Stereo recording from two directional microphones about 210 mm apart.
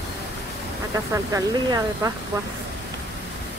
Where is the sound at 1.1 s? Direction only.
15° right (ahead or behind).